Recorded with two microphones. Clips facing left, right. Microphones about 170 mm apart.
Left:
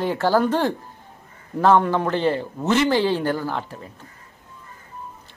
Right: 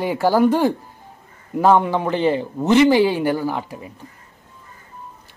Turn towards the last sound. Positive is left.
turn(degrees=-15)  # may be behind; listen again after turning